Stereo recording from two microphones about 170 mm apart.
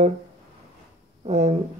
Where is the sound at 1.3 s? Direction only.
40° right (ahead or behind).